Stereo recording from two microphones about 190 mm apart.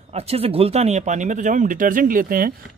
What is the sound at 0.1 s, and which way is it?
Speech, 30° right (ahead or behind).